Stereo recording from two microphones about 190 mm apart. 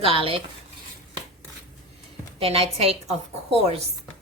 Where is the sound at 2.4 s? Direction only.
30° right (ahead or behind).